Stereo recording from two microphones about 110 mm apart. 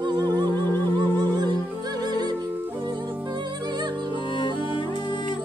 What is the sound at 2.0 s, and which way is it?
Music, 40° right (ahead or behind).